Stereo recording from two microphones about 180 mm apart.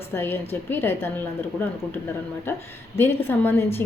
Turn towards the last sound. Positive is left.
turn(degrees=10)  # may be behind; listen again after turning